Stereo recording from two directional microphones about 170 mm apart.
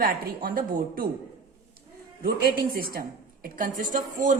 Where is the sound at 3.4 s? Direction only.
55° right (ahead or behind).